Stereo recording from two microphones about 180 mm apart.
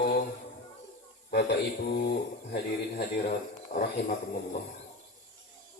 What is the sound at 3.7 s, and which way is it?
Speech, 50° left (ahead or behind).